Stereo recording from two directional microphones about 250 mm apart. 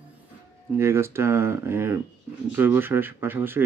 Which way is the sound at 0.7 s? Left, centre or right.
Centre.